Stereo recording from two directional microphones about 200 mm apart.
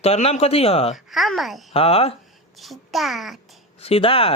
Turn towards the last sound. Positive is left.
turn(degrees=30)  # may be behind; listen again after turning